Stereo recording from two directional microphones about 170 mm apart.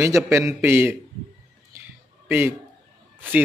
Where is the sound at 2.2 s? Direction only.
15° right (ahead or behind).